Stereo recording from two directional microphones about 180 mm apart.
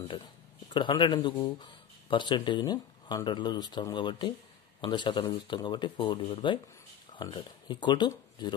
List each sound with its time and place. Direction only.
0.7 s speech: 25° left (ahead or behind)